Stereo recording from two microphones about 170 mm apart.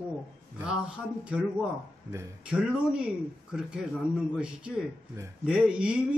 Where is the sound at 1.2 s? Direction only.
5° right (ahead or behind).